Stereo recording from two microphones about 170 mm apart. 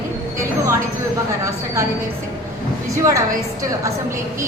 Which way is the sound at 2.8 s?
20° right (ahead or behind).